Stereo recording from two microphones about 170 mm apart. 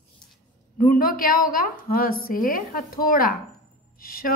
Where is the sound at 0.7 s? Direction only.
55° left (ahead or behind).